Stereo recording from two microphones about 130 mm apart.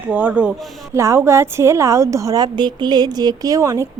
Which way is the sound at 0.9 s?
20° right (ahead or behind).